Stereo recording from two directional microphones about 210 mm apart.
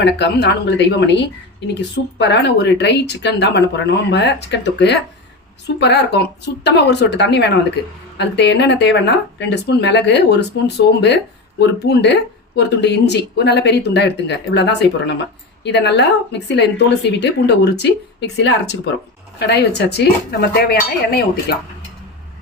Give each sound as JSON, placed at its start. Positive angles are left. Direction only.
{"t": 0.0, "sound": "speech", "side_deg": 55}
{"t": 11.8, "sound": "speech", "side_deg": 55}